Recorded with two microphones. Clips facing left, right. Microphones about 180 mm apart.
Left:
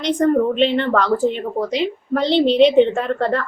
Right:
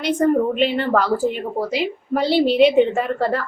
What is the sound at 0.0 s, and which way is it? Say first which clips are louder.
A woman's voice: left 1 dB; 5° right (ahead or behind).